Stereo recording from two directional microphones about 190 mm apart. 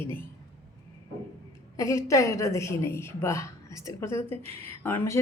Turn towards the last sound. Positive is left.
turn(degrees=10)  # may be behind; listen again after turning